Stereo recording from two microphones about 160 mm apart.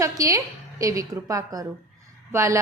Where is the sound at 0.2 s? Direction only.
20° right (ahead or behind).